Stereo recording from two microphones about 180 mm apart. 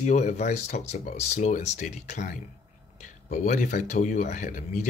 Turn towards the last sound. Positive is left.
turn(degrees=45)  # may be behind; listen again after turning